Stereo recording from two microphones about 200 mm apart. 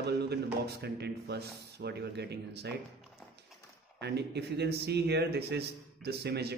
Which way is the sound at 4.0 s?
55° right (ahead or behind).